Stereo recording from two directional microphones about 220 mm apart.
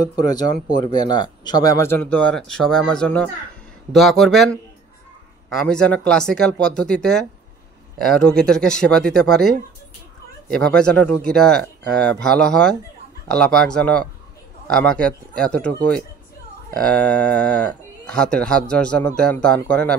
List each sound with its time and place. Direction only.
0.1 s speech: 15° left (ahead or behind)
10.5 s speech: 5° left (ahead or behind)